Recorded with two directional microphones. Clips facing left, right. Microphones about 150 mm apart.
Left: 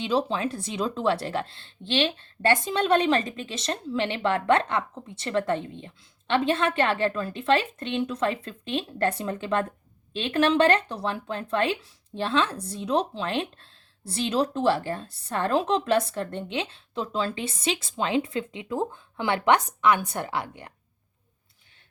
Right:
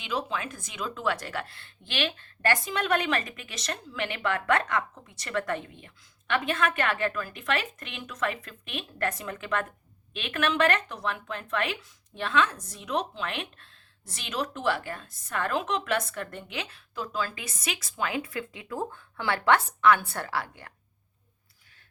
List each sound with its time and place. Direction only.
0.0 s speech: 30° left (ahead or behind)